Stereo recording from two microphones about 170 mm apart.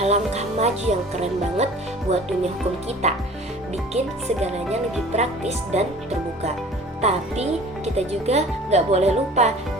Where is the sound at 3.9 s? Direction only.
40° right (ahead or behind).